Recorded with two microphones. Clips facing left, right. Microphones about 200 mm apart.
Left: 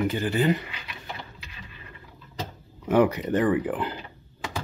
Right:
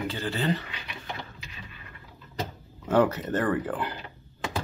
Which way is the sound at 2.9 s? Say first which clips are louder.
Left 2 dB; 15° left (ahead or behind).